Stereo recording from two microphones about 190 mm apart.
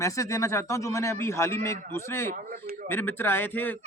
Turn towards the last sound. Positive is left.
turn(degrees=10)  # may be behind; listen again after turning